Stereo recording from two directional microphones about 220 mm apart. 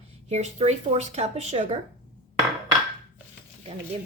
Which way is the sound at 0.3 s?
30° right (ahead or behind).